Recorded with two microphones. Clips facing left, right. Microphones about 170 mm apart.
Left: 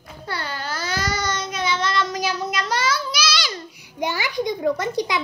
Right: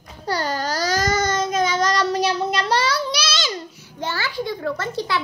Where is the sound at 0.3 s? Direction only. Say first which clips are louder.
Right 6 dB; 40° right (ahead or behind); by 3.6 s 25° right (ahead or behind).